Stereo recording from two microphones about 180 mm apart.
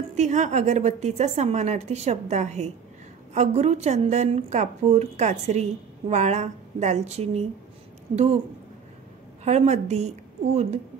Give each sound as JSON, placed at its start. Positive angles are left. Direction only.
{"t": 0.1, "sound": "a woman's voice", "side_deg": -40}
{"t": 9.4, "sound": "a woman's voice", "side_deg": -40}